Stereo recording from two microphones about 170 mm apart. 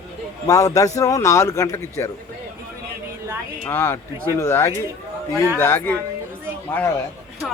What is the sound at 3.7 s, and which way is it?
Speech, 15° left (ahead or behind).